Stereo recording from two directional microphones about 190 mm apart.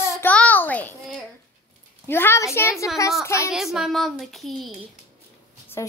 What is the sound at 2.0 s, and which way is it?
A child's voice, 10° left (ahead or behind).